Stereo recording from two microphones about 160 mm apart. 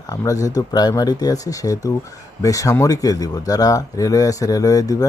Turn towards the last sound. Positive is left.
turn(degrees=20)  # may be behind; listen again after turning